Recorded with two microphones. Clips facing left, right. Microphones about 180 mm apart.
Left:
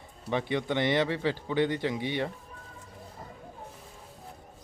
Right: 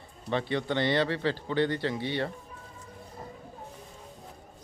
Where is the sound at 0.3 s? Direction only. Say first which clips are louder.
Even; 15° left (ahead or behind).